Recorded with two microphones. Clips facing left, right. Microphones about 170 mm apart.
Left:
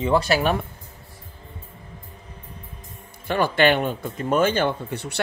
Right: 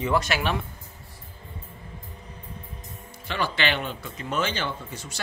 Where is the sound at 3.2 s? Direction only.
50° left (ahead or behind).